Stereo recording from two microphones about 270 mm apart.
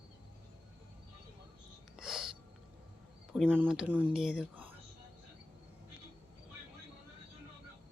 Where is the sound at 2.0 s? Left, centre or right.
Centre.